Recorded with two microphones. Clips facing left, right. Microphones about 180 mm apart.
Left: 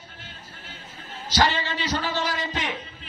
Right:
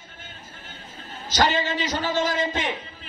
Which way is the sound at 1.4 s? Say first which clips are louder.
Right 4 dB; 15° right (ahead or behind).